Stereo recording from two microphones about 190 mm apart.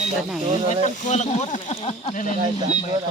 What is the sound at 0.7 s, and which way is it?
Speech, 40° left (ahead or behind).